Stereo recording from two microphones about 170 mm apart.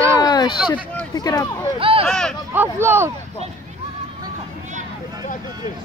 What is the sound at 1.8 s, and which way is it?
Speech, 30° right (ahead or behind).